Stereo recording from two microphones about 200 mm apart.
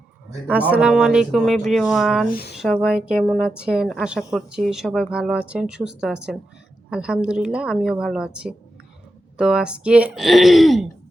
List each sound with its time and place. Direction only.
0.4 s speech: 5° right (ahead or behind)
2.3 s speech: 55° left (ahead or behind)
2.6 s speech: centre (ahead or behind)